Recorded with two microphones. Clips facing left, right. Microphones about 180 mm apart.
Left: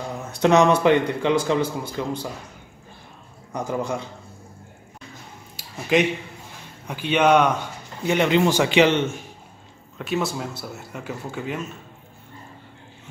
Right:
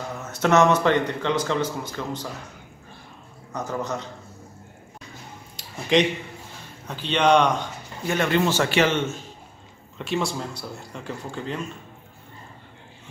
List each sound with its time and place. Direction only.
0.2 s speech: 15° left (ahead or behind)
3.5 s speech: 10° left (ahead or behind)
5.6 s a sound: 5° left (ahead or behind)
6.9 s speech: 10° left (ahead or behind)
8.0 s speech: 20° left (ahead or behind)
9.9 s speech: centre (ahead or behind)